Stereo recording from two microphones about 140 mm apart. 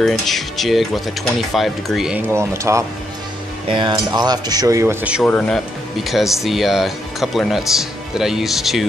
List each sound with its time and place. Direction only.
0.0 s speech: centre (ahead or behind)
2.2 s cutlery: 20° right (ahead or behind)
3.7 s cutlery: 35° right (ahead or behind)
5.2 s speech: 5° left (ahead or behind)